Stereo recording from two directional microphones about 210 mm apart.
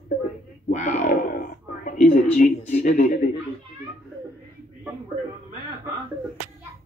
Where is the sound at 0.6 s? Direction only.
35° left (ahead or behind).